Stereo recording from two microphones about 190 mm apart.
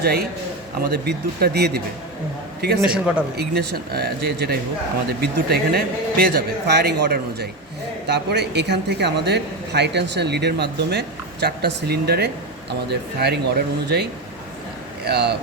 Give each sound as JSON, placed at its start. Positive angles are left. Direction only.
{"t": 0.0, "sound": "a man's voice", "side_deg": -55}
{"t": 2.8, "sound": "speech", "side_deg": -5}
{"t": 3.3, "sound": "speech", "side_deg": -55}